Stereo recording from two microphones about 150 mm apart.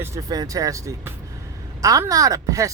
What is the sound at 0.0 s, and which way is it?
Speech, 20° right (ahead or behind).